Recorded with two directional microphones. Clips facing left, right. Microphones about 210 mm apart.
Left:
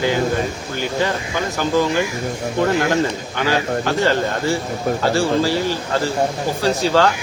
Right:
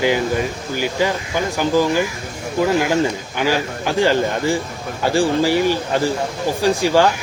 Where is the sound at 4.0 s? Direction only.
15° right (ahead or behind).